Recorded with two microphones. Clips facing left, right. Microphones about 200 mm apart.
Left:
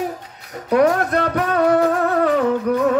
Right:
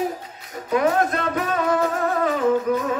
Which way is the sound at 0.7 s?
65° left (ahead or behind).